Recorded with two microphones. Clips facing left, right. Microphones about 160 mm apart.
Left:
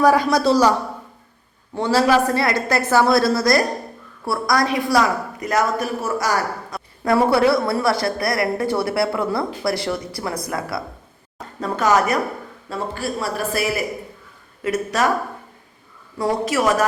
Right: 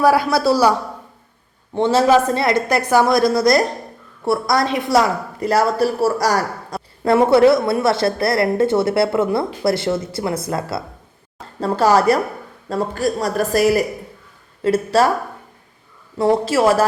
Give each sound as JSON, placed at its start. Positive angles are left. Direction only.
{"t": 0.0, "sound": "a man's voice", "side_deg": -10}
{"t": 1.7, "sound": "a woman's voice", "side_deg": -25}
{"t": 16.1, "sound": "a woman's voice", "side_deg": -25}